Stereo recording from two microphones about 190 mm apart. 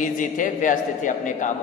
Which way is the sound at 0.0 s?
45° left (ahead or behind).